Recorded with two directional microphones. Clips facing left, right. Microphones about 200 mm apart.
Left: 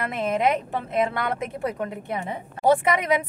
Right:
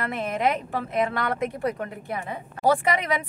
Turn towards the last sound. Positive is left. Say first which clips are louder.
# left 3 dB
turn(degrees=25)  # may be behind; listen again after turning